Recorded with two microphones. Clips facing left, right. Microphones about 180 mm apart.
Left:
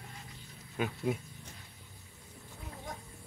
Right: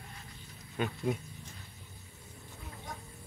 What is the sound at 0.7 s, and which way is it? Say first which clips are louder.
Speech: even; 5° left (ahead or behind).